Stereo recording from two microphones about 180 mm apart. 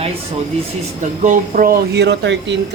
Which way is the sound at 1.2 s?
45° right (ahead or behind).